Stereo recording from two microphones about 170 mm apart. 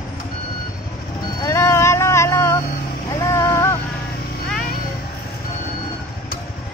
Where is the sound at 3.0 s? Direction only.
20° left (ahead or behind).